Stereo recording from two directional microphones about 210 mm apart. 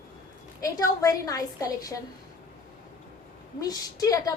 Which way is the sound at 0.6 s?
15° left (ahead or behind).